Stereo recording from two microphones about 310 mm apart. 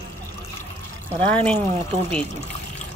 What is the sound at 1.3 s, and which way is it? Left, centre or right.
Speech, centre.